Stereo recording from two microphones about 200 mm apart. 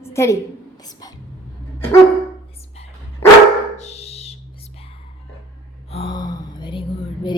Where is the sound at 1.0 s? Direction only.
20° left (ahead or behind).